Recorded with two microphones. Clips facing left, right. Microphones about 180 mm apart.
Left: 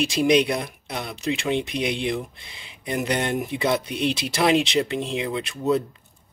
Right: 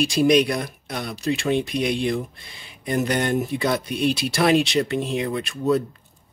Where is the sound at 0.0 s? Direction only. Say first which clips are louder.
Right 2 dB; 20° left (ahead or behind).